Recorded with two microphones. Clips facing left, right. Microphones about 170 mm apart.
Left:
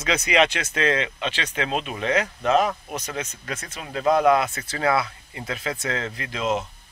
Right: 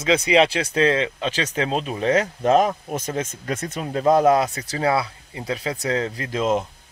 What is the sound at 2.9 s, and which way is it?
Speech, 50° right (ahead or behind).